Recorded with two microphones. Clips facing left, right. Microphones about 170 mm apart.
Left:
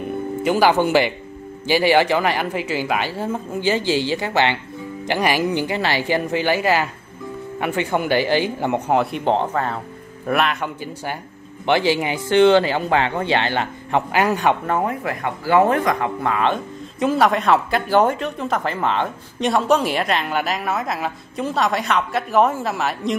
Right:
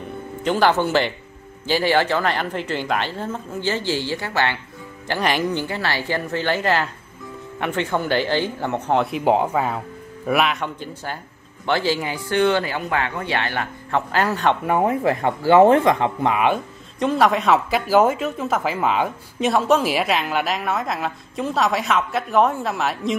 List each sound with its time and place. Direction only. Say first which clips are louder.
0.4 s a woman's voice: left 2 dB; 10° left (ahead or behind)
8.9 s speech: right 2 dB; centre (ahead or behind)
11.6 s speech: left 3 dB; 15° left (ahead or behind)
14.1 s a woman's voice: left 1 dB; 15° left (ahead or behind)
14.7 s speech: right 3 dB; 20° right (ahead or behind)
17.0 s speech: left 1 dB; centre (ahead or behind)